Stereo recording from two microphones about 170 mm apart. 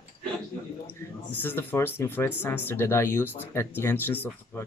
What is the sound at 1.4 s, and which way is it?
Speech, 15° left (ahead or behind).